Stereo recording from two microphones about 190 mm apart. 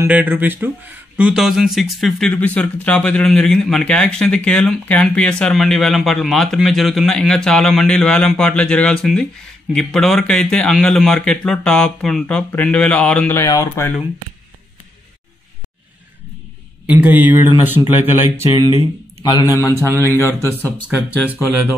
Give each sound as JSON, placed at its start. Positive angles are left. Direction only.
{"t": 0.0, "sound": "speech", "side_deg": -10}
{"t": 16.8, "sound": "speech", "side_deg": -10}
{"t": 18.5, "sound": "a man's voice", "side_deg": 25}
{"t": 20.2, "sound": "speech", "side_deg": -15}
{"t": 20.6, "sound": "a man's voice", "side_deg": 10}